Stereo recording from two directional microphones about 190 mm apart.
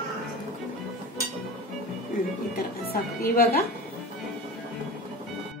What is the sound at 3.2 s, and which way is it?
Speech, 50° left (ahead or behind).